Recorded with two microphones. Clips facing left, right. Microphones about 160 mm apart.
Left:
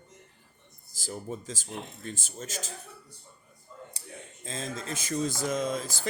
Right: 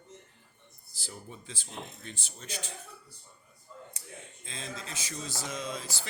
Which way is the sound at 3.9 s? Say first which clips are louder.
Left 3 dB; 35° left (ahead or behind).